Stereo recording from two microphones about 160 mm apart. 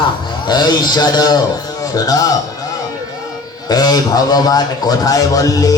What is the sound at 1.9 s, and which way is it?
Speech, 20° left (ahead or behind).